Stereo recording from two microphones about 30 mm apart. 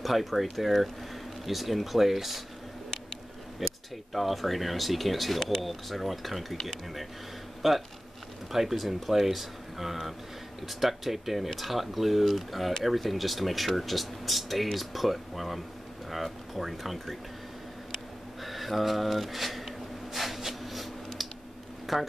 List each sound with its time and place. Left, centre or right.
0.0 s speech: centre
3.6 s a sound: centre
4.1 s speech: centre
6.5 s speech: centre
7.6 s speech: centre
18.4 s a sound: centre
21.9 s speech: centre